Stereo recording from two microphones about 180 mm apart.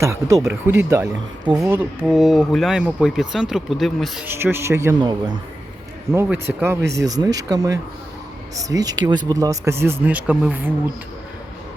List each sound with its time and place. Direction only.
0.0 s speech: 15° right (ahead or behind); by 4.3 s centre (ahead or behind)
4.3 s speech: 10° right (ahead or behind)
6.2 s speech: 10° right (ahead or behind)